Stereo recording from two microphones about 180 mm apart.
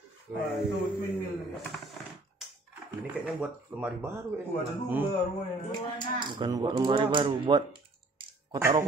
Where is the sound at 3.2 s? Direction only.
10° right (ahead or behind).